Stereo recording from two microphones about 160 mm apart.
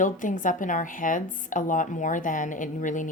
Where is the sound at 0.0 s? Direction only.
55° left (ahead or behind).